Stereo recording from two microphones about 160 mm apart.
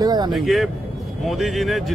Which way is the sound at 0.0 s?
25° right (ahead or behind).